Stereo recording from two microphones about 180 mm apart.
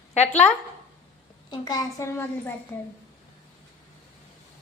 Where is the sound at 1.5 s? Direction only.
20° left (ahead or behind).